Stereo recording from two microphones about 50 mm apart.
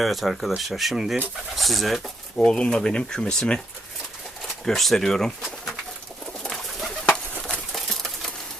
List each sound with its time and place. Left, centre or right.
0.0 s speech: centre
2.3 s speech: centre
4.6 s speech: centre
6.4 s bird: centre
7.1 s bird: centre
7.7 s typewriter: centre